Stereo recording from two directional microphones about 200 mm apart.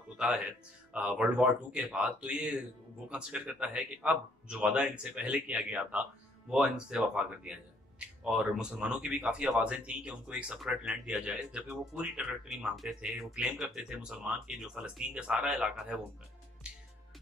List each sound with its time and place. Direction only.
0.9 s speech: 5° right (ahead or behind)
16.6 s music: 5° right (ahead or behind)